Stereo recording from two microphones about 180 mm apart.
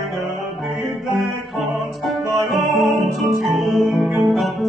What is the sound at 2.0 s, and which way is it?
Music, centre (ahead or behind).